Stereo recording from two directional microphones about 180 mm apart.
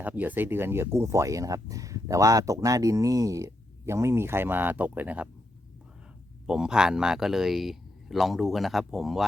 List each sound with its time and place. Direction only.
0.0 s speech: 10° right (ahead or behind)
6.5 s speech: 5° right (ahead or behind)